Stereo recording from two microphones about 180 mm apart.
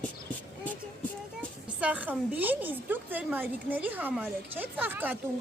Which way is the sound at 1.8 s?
10° right (ahead or behind).